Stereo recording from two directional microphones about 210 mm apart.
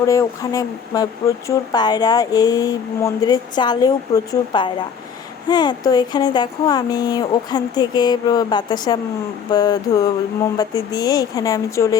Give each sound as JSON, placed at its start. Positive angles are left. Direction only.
{"t": 0.0, "sound": "a woman's voice", "side_deg": 15}